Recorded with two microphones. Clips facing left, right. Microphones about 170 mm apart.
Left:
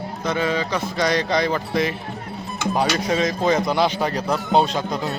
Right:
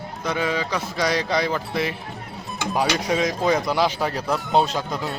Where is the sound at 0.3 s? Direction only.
10° right (ahead or behind).